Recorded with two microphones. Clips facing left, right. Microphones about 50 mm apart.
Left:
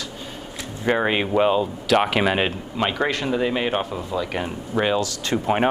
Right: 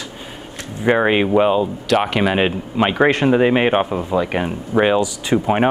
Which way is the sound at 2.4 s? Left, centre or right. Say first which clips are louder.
Right 5 dB; centre.